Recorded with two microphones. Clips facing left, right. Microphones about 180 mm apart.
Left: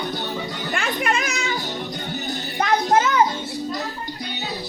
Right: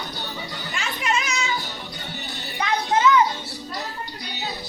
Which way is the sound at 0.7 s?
55° left (ahead or behind).